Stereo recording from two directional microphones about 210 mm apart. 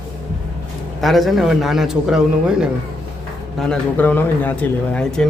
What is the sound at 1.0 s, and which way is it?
Speech, centre (ahead or behind).